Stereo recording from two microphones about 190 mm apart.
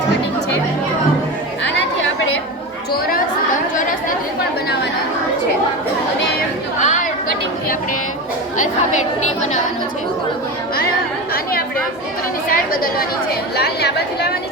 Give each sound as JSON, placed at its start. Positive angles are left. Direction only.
{"t": 6.7, "sound": "chatter", "side_deg": 40}
{"t": 12.5, "sound": "a woman's voice", "side_deg": 50}